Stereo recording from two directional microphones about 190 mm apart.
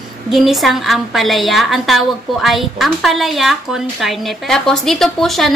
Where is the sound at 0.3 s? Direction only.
Centre (ahead or behind).